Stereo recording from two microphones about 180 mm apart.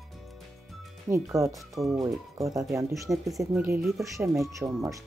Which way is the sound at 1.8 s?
Centre (ahead or behind).